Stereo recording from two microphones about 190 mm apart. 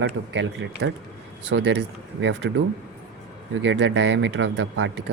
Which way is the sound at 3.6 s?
70° right (ahead or behind).